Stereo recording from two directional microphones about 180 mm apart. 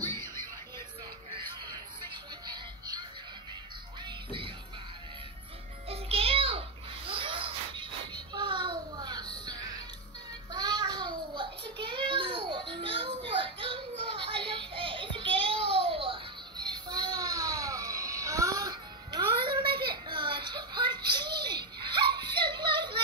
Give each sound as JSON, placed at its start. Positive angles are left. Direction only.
{"t": 0.0, "sound": "music", "side_deg": 15}
{"t": 2.4, "sound": "music", "side_deg": -25}
{"t": 5.9, "sound": "a sound", "side_deg": -30}
{"t": 10.5, "sound": "child singing", "side_deg": -25}
{"t": 13.4, "sound": "music", "side_deg": -30}
{"t": 19.9, "sound": "a sound", "side_deg": -25}